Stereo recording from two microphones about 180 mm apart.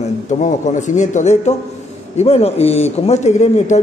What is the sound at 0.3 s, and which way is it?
A man's voice, 45° left (ahead or behind).